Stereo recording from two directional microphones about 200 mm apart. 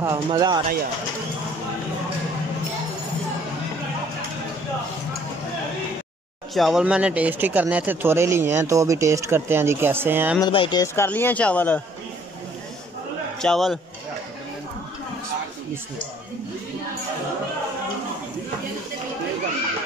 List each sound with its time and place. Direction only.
0.0 s speech: 15° right (ahead or behind)
6.5 s speech: centre (ahead or behind)
10.4 s speech: 25° left (ahead or behind)
11.1 s speech: 10° left (ahead or behind)
13.4 s speech: centre (ahead or behind)